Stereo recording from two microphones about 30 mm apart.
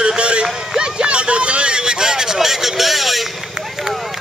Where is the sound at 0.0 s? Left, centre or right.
Right.